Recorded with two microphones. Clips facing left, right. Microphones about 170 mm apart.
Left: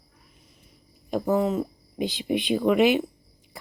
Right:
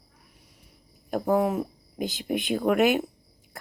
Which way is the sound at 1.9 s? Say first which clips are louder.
Left 2 dB; 45° right (ahead or behind).